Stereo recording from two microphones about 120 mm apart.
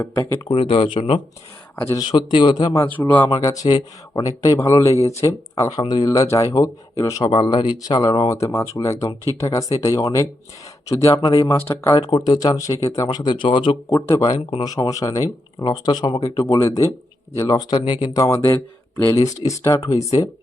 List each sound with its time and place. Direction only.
0.5 s speech: 50° left (ahead or behind)
0.9 s speech: 60° left (ahead or behind)
1.7 s a man's voice: 25° left (ahead or behind)
2.1 s speech: 40° left (ahead or behind)
2.8 s speech: 15° left (ahead or behind)
3.2 s a man's voice: 30° left (ahead or behind)
7.3 s speech: 45° left (ahead or behind)
8.3 s a man's voice: 25° left (ahead or behind)
11.4 s a man's voice: 20° left (ahead or behind)
12.1 s speech: 35° left (ahead or behind)
14.1 s a man's voice: 30° left (ahead or behind)